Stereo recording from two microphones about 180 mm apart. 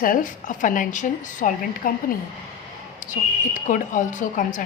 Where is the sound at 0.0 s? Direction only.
50° left (ahead or behind).